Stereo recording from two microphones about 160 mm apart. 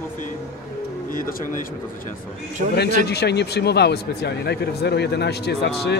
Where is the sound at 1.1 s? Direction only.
60° left (ahead or behind).